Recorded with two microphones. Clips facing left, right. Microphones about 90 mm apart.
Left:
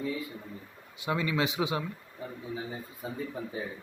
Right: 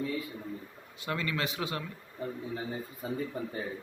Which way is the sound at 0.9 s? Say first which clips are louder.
Left 4 dB; 15° left (ahead or behind).